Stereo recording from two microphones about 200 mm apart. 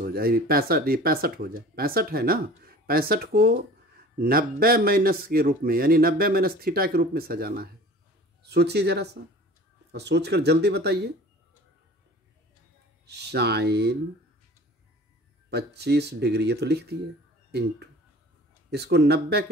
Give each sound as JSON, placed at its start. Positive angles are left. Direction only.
{"t": 0.0, "sound": "speech", "side_deg": -50}
{"t": 13.0, "sound": "speech", "side_deg": -55}
{"t": 15.5, "sound": "speech", "side_deg": -55}